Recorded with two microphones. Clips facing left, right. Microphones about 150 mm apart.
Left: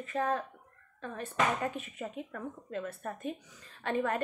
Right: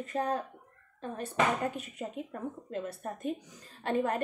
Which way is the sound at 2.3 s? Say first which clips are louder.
Right 2 dB; 25° right (ahead or behind).